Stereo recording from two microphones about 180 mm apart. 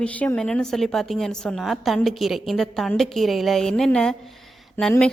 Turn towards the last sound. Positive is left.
turn(degrees=10)  # may be behind; listen again after turning